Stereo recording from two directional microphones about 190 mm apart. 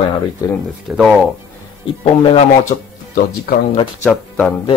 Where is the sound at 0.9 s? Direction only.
Centre (ahead or behind).